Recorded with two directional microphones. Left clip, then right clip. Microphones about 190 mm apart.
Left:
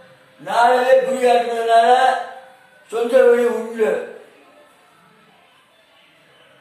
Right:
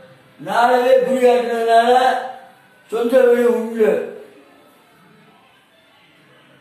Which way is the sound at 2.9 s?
10° right (ahead or behind).